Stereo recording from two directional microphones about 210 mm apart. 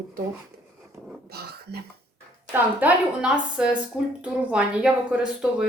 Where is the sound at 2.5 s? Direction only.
5° right (ahead or behind).